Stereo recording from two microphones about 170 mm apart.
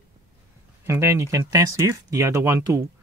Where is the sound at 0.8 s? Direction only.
15° right (ahead or behind).